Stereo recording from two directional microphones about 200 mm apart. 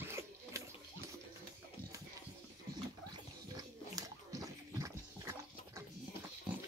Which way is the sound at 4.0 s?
15° right (ahead or behind).